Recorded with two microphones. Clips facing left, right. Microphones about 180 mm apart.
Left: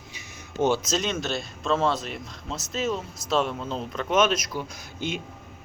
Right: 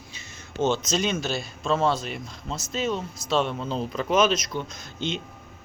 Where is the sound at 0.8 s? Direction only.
Centre (ahead or behind).